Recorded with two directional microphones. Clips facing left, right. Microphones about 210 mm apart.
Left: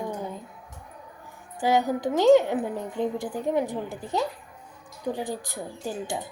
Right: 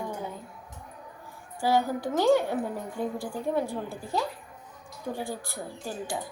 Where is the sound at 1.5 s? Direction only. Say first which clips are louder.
Left 2 dB; 20° left (ahead or behind).